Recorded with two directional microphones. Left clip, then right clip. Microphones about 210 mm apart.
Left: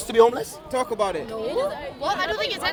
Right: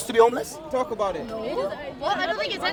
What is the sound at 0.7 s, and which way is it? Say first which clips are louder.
Speech: left 2 dB; 40° left (ahead or behind).